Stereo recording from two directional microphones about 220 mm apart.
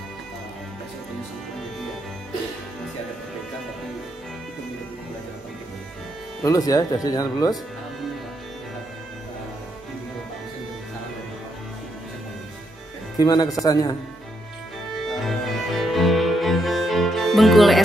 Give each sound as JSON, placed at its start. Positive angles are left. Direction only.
{"t": 6.4, "sound": "speech", "side_deg": 15}
{"t": 13.2, "sound": "speech", "side_deg": 15}
{"t": 15.0, "sound": "cello", "side_deg": 0}